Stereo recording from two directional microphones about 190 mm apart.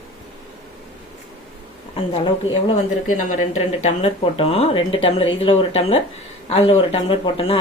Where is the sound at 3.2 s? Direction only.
40° left (ahead or behind).